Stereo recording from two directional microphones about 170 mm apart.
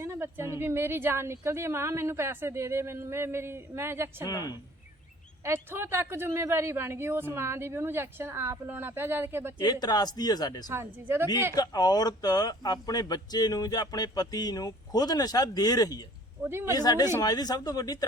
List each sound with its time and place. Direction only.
0.0 s a woman's voice: 15° right (ahead or behind)
4.3 s speech: 20° left (ahead or behind)
5.4 s a woman's voice: 15° right (ahead or behind)
9.8 s speech: 25° left (ahead or behind)
10.7 s a woman's voice: 15° right (ahead or behind)
11.5 s speech: 25° left (ahead or behind)
16.4 s a woman's voice: 15° right (ahead or behind)
16.7 s speech: 25° left (ahead or behind)